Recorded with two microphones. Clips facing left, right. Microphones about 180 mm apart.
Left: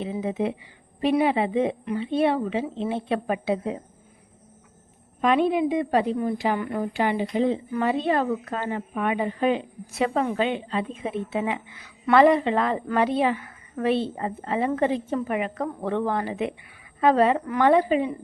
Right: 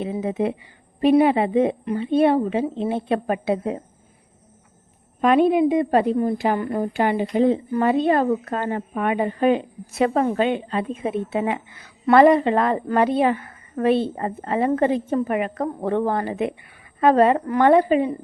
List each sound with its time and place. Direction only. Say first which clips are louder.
0.0 s a woman's voice: right 3 dB; 50° right (ahead or behind)
5.2 s a woman's voice: right 5 dB; 50° right (ahead or behind)